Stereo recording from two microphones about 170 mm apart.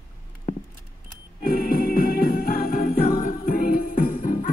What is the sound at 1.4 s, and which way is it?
Music, 60° left (ahead or behind).